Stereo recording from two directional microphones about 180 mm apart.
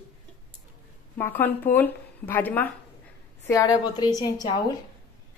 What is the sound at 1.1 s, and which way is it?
A woman's voice, 10° left (ahead or behind).